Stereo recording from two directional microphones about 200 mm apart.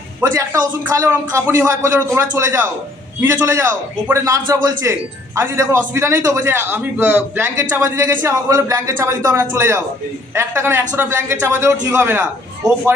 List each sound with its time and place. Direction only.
0.2 s speech: 15° right (ahead or behind)